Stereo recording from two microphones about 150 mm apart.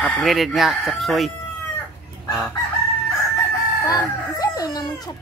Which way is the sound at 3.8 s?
25° left (ahead or behind).